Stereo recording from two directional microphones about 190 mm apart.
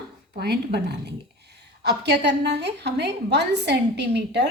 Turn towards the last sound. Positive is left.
turn(degrees=-65)  # may be behind; listen again after turning